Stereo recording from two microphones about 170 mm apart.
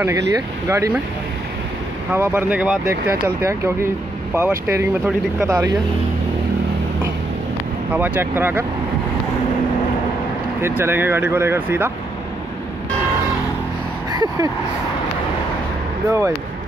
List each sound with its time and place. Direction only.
0.0 s speech: 15° right (ahead or behind)
2.1 s speech: 10° right (ahead or behind)
7.9 s speech: 10° right (ahead or behind)
10.6 s speech: 15° right (ahead or behind)
14.1 s a sound: 25° right (ahead or behind)
16.1 s speech: 15° right (ahead or behind)